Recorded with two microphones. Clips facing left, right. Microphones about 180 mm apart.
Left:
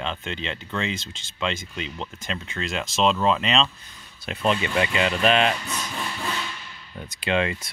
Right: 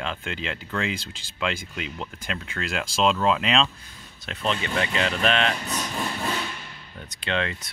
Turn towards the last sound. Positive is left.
turn(degrees=10)  # may be behind; listen again after turning